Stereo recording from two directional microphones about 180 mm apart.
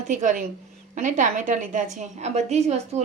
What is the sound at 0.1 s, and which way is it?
A woman's voice, 45° right (ahead or behind).